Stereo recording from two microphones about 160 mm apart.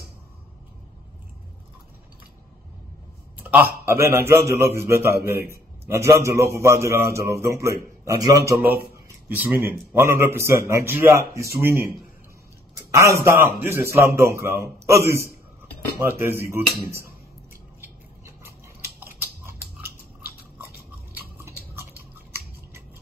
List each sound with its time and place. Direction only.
3.3 s a man's voice: 10° right (ahead or behind)
9.3 s a man's voice: 10° right (ahead or behind)
12.9 s a man's voice: 20° right (ahead or behind)
17.7 s a sound: 15° right (ahead or behind)
21.1 s chewing: 15° right (ahead or behind)